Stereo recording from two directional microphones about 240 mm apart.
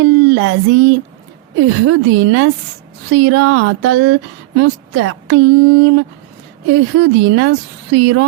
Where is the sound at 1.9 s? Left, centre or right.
Right.